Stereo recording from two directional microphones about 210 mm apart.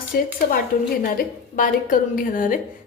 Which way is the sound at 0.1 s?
50° left (ahead or behind).